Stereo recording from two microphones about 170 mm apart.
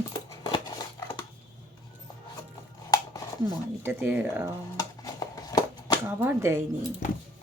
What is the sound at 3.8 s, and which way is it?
Speech, 15° right (ahead or behind).